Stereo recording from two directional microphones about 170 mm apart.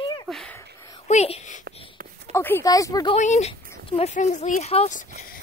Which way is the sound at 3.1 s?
40° left (ahead or behind).